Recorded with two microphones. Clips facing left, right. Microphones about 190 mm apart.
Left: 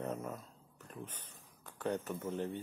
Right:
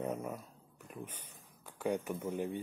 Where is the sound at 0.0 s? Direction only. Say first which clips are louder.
Right 2 dB; 10° right (ahead or behind).